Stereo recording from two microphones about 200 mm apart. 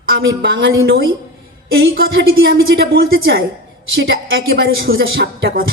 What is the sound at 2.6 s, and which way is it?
Speech, 50° right (ahead or behind).